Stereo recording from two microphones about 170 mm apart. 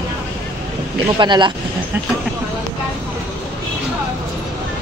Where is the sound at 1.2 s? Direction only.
25° right (ahead or behind).